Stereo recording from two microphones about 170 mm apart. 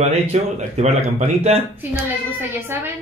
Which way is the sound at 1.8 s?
10° right (ahead or behind).